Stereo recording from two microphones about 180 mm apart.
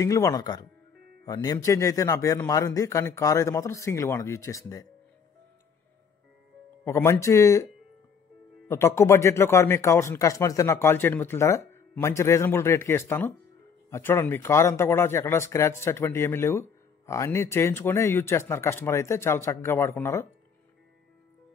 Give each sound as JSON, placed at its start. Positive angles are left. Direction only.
{"t": 0.0, "sound": "speech", "side_deg": 15}
{"t": 6.8, "sound": "speech", "side_deg": 15}
{"t": 8.6, "sound": "speech", "side_deg": 15}